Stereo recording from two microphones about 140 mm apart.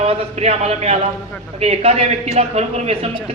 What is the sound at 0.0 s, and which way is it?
A man's voice, 45° right (ahead or behind).